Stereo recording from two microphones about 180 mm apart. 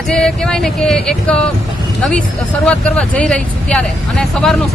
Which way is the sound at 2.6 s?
5° left (ahead or behind).